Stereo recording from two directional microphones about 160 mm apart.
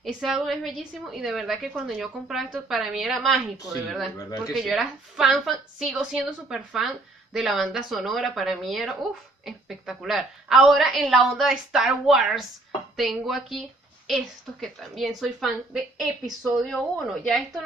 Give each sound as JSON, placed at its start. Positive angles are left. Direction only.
{"t": 0.0, "sound": "a woman's voice", "side_deg": 0}
{"t": 4.5, "sound": "a woman's voice", "side_deg": 0}